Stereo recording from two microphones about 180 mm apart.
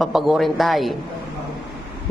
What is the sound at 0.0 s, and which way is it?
Speech, centre (ahead or behind).